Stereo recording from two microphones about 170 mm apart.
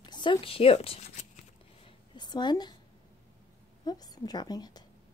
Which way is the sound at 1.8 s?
25° left (ahead or behind).